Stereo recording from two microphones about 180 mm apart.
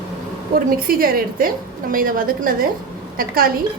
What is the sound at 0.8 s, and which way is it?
A woman's voice, 55° right (ahead or behind).